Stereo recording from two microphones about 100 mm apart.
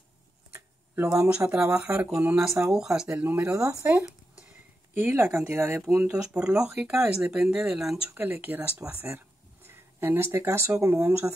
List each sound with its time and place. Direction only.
0.5 s a sound: 20° right (ahead or behind)
1.5 s speech: 10° right (ahead or behind)
3.8 s a sound: 10° right (ahead or behind)
4.9 s speech: 20° right (ahead or behind)
6.0 s speech: 10° right (ahead or behind)
7.2 s speech: 15° right (ahead or behind)
7.6 s speech: 5° right (ahead or behind)
8.1 s speech: 20° right (ahead or behind)